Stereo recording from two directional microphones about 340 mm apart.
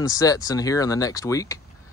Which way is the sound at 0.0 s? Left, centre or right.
Centre.